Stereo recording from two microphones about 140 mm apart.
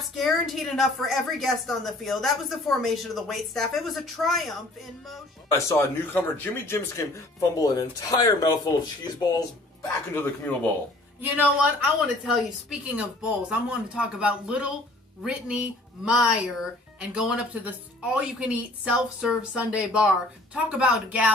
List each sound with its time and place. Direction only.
0.0 s a woman's voice: centre (ahead or behind)
5.5 s speech: 20° left (ahead or behind)
10.1 s speech: 10° left (ahead or behind)
11.1 s a woman's voice: 10° right (ahead or behind)